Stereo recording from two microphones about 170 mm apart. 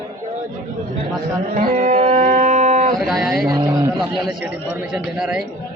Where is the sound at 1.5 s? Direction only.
50° right (ahead or behind).